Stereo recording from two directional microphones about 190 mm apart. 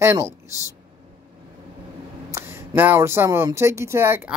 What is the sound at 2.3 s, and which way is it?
Speech, 15° right (ahead or behind).